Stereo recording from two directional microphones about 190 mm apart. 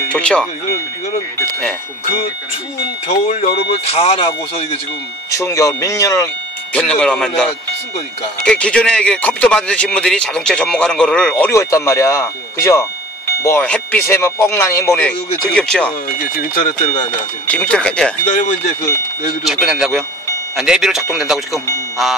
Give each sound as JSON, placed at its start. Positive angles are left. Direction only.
{"t": 0.1, "sound": "speech", "side_deg": 5}
{"t": 3.1, "sound": "speech", "side_deg": 35}
{"t": 5.3, "sound": "speech", "side_deg": 15}
{"t": 7.0, "sound": "speech", "side_deg": 5}
{"t": 8.5, "sound": "speech", "side_deg": 5}
{"t": 16.3, "sound": "speech", "side_deg": 45}
{"t": 17.5, "sound": "speech", "side_deg": 5}
{"t": 19.4, "sound": "speech", "side_deg": 0}